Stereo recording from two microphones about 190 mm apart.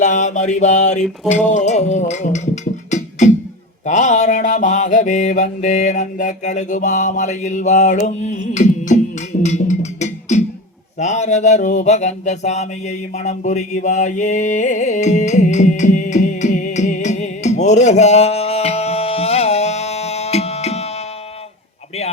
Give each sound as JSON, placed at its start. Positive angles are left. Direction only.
{"t": 0.0, "sound": "mantra", "side_deg": 40}
{"t": 2.9, "sound": "music", "side_deg": 40}
{"t": 3.8, "sound": "mantra", "side_deg": 40}
{"t": 10.9, "sound": "a sound", "side_deg": 40}